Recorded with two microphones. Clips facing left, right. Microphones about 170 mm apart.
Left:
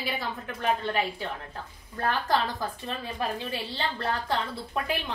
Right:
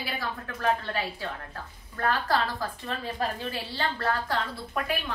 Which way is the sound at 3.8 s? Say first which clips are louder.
Right 3 dB; 25° left (ahead or behind).